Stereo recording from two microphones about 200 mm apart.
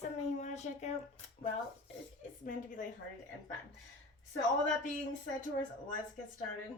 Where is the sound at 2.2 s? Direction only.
40° left (ahead or behind).